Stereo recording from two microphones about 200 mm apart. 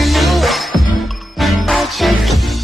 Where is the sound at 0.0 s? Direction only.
Centre (ahead or behind).